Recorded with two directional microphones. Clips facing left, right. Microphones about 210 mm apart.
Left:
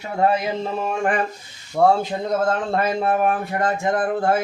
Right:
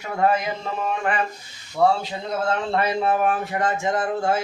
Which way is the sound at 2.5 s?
45° left (ahead or behind).